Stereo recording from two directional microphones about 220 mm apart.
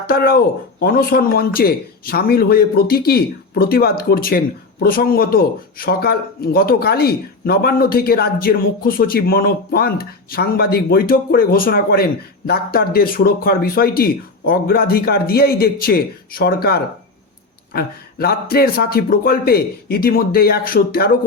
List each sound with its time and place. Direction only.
0.1 s speech: 45° left (ahead or behind)